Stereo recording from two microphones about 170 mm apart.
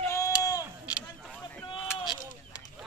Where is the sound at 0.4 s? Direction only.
20° left (ahead or behind).